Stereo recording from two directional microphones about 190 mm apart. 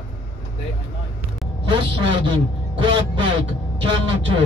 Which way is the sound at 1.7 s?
25° right (ahead or behind).